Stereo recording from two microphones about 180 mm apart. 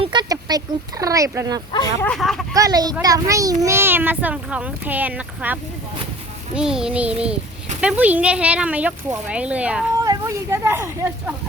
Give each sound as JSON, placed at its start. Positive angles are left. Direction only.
{"t": 0.0, "sound": "a sound", "side_deg": -25}
{"t": 1.7, "sound": "speech", "side_deg": 20}
{"t": 2.0, "sound": "child singing", "side_deg": 0}
{"t": 2.5, "sound": "a child's voice", "side_deg": -20}
{"t": 6.5, "sound": "child singing", "side_deg": -5}
{"t": 7.8, "sound": "speech", "side_deg": -5}
{"t": 10.0, "sound": "a sound", "side_deg": -20}